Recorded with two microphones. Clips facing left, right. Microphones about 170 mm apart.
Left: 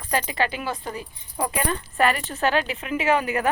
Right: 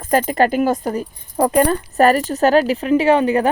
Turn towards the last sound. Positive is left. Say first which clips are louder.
# right 8 dB
turn(degrees=-30)  # may be behind; listen again after turning